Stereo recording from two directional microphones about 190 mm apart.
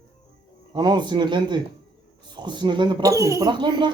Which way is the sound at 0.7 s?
25° right (ahead or behind).